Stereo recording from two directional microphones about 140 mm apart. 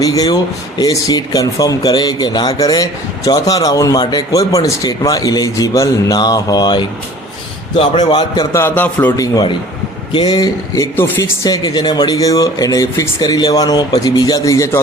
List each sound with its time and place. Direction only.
0.0 s a man's voice: 25° left (ahead or behind)
8.5 s speech: 15° left (ahead or behind)
9.1 s speech: 25° left (ahead or behind)
10.9 s speech: 15° left (ahead or behind)
11.4 s speech: 30° left (ahead or behind)